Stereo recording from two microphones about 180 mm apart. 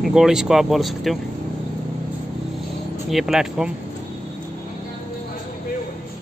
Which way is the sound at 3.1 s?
Centre (ahead or behind).